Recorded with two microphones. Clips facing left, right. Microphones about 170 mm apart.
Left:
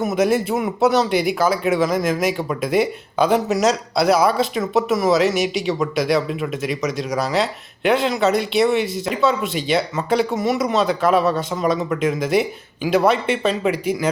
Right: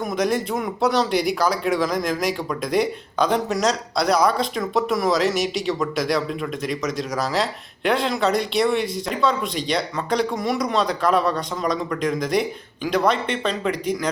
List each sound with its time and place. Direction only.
0.0 s speech: 5° left (ahead or behind)